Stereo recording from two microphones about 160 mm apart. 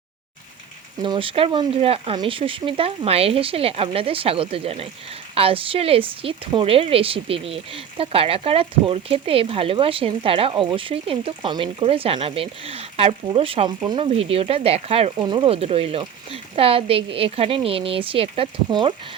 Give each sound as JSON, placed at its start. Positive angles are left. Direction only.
{"t": 1.0, "sound": "speech", "side_deg": -30}